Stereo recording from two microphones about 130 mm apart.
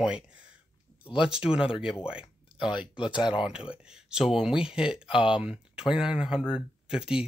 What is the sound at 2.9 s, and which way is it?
Speech, 35° left (ahead or behind).